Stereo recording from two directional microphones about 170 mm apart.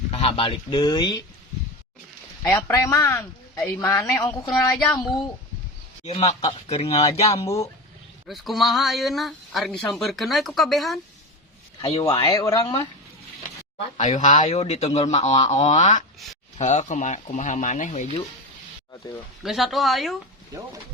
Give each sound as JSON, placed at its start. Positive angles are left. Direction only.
{"t": 0.1, "sound": "speech", "side_deg": 35}
{"t": 2.4, "sound": "a man's voice", "side_deg": 15}
{"t": 6.1, "sound": "a man's voice", "side_deg": 40}
{"t": 8.3, "sound": "speech", "side_deg": 0}
{"t": 11.8, "sound": "a man's voice", "side_deg": 30}
{"t": 13.9, "sound": "a man's voice", "side_deg": 40}
{"t": 19.4, "sound": "speech", "side_deg": 0}
{"t": 20.5, "sound": "speech", "side_deg": -20}